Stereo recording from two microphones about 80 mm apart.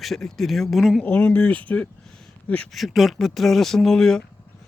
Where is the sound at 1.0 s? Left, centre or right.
Centre.